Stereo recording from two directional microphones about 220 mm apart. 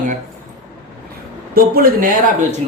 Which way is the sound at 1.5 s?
40° right (ahead or behind).